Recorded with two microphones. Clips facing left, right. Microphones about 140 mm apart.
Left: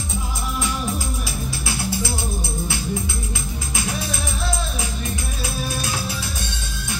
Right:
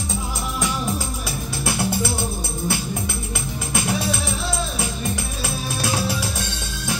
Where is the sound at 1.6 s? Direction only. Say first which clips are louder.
Right 4 dB; 65° right (ahead or behind).